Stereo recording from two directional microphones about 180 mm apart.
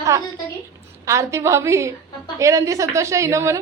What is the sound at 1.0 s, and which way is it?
A woman's voice, 15° right (ahead or behind).